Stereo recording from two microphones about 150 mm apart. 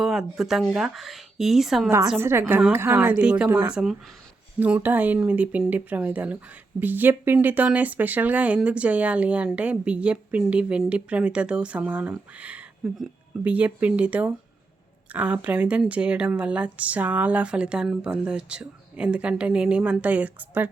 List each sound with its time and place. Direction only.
0.0 s speech: centre (ahead or behind)
2.1 s speech: 15° right (ahead or behind)